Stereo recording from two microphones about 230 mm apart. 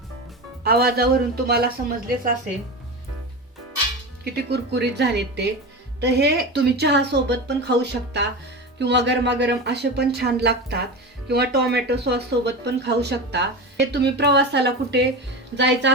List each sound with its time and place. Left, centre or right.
0.6 s speech: right
4.2 s speech: right